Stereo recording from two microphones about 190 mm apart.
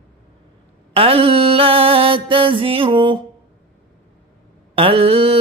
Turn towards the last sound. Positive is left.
turn(degrees=-30)  # may be behind; listen again after turning